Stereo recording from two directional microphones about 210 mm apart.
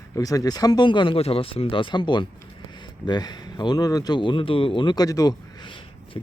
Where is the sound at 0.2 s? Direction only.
15° left (ahead or behind).